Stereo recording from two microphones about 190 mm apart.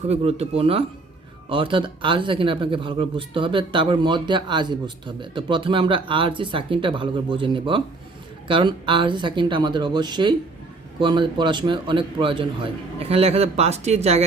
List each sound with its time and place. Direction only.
0.0 s speech: 35° right (ahead or behind)